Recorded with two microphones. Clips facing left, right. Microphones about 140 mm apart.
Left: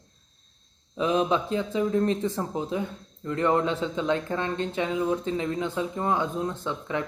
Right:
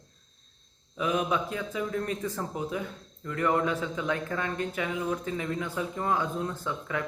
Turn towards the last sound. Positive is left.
turn(degrees=20)  # may be behind; listen again after turning